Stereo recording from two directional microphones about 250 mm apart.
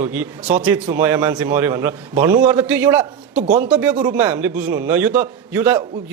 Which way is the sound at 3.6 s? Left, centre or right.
Centre.